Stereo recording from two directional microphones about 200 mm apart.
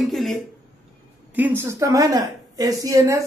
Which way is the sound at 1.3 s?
10° right (ahead or behind).